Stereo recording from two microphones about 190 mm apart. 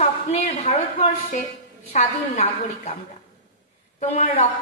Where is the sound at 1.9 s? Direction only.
35° left (ahead or behind).